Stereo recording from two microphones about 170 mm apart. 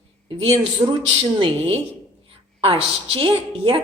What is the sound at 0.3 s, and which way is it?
A woman's voice, 35° right (ahead or behind).